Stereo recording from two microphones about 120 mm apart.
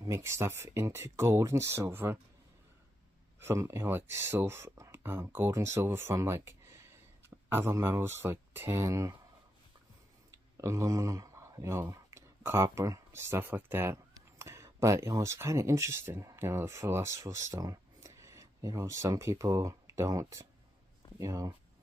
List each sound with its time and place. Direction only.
0.0 s speech: 25° right (ahead or behind)
3.3 s speech: 20° right (ahead or behind)
10.6 s speech: 25° right (ahead or behind)